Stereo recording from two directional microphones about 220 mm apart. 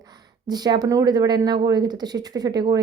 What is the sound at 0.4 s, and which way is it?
A woman's voice, 20° right (ahead or behind).